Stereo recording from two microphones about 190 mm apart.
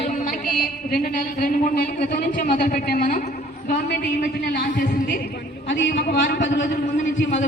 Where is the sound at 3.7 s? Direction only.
55° left (ahead or behind).